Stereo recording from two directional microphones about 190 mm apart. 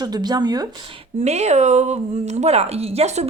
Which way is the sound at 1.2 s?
35° right (ahead or behind).